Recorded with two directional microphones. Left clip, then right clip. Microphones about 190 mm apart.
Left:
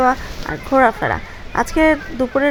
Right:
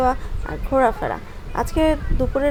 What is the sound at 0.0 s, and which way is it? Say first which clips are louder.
Speech: left 4 dB; 20° left (ahead or behind).